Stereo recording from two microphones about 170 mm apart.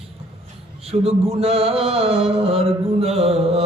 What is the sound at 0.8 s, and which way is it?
Mantra, 35° right (ahead or behind).